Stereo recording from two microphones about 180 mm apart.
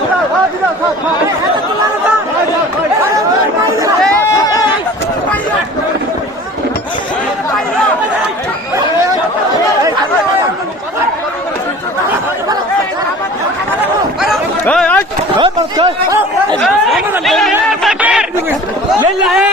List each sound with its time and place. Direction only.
4.0 s chatter: 15° left (ahead or behind)
14.6 s a sound: 5° left (ahead or behind)
15.4 s speech: 25° right (ahead or behind)
16.6 s speech: centre (ahead or behind)
17.5 s a sound: 5° right (ahead or behind)
19.2 s speech: 5° right (ahead or behind)